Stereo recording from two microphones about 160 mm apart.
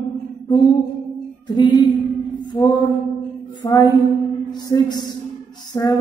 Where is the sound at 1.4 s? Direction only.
25° left (ahead or behind).